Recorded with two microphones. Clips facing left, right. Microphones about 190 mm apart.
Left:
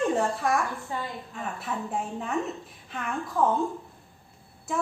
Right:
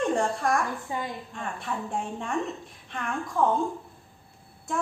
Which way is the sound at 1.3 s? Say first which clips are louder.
Left 2 dB; 5° left (ahead or behind).